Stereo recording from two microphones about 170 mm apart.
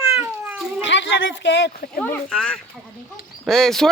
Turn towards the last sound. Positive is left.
turn(degrees=0)  # may be behind; listen again after turning